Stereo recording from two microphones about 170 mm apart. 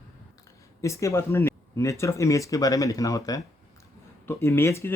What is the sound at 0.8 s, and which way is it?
Speech, 15° left (ahead or behind).